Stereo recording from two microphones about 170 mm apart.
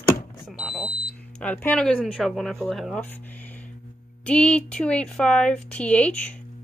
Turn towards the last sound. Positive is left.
turn(degrees=10)  # may be behind; listen again after turning